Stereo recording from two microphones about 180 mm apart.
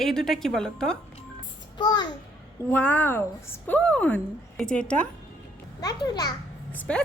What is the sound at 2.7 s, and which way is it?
A woman's voice, 10° left (ahead or behind).